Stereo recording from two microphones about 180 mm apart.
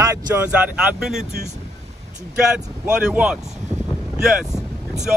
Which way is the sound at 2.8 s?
5° right (ahead or behind).